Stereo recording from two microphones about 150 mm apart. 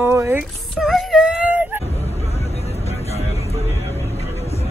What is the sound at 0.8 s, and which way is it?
Speech, centre (ahead or behind).